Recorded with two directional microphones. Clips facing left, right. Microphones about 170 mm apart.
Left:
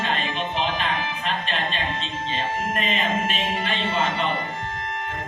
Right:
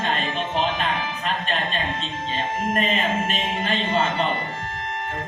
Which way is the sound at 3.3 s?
40° right (ahead or behind).